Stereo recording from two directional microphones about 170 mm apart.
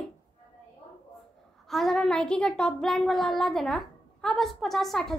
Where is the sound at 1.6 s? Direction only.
Centre (ahead or behind).